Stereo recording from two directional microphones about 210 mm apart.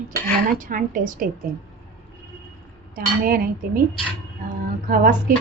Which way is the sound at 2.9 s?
45° right (ahead or behind).